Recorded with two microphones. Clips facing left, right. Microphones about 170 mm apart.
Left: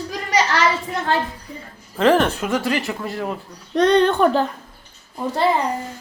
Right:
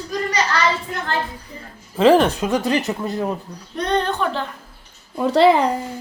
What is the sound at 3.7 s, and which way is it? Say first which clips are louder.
Speech: left 6 dB; 90° left.